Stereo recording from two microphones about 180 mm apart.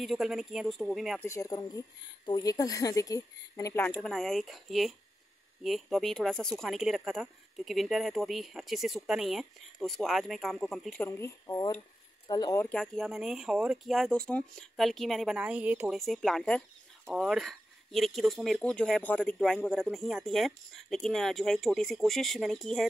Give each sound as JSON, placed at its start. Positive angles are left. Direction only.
{"t": 0.0, "sound": "speech", "side_deg": 0}
{"t": 1.2, "sound": "a woman's voice", "side_deg": 15}
{"t": 4.0, "sound": "speech", "side_deg": 0}
{"t": 11.1, "sound": "a woman's voice", "side_deg": 15}
{"t": 12.6, "sound": "speech", "side_deg": 5}
{"t": 16.0, "sound": "speech", "side_deg": 0}